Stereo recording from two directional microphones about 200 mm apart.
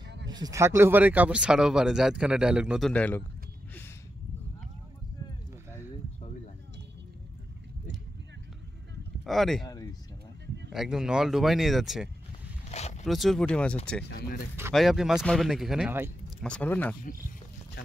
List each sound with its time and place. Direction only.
0.3 s speech: 20° right (ahead or behind)
2.9 s speech: 10° left (ahead or behind)
9.2 s speech: centre (ahead or behind)
10.7 s speech: centre (ahead or behind)
12.7 s zipper: 35° left (ahead or behind)
13.0 s speech: centre (ahead or behind)
14.0 s speech: 50° left (ahead or behind)
14.7 s speech: centre (ahead or behind)
16.4 s speech: 5° left (ahead or behind)